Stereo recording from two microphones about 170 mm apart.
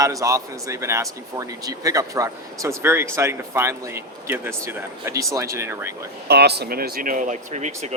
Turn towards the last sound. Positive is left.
turn(degrees=-40)  # may be behind; listen again after turning